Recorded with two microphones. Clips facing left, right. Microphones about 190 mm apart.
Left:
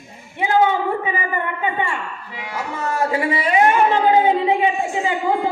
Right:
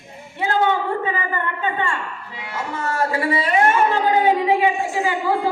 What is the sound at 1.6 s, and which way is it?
A woman's voice, 15° left (ahead or behind).